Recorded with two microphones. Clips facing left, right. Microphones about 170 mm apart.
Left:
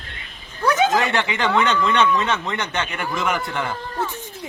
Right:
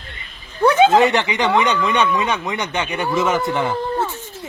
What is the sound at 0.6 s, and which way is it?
Speech, 25° right (ahead or behind).